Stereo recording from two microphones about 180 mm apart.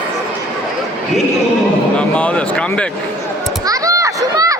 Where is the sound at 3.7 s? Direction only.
20° right (ahead or behind).